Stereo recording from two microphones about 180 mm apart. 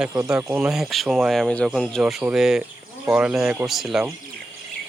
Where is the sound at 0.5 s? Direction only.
5° right (ahead or behind).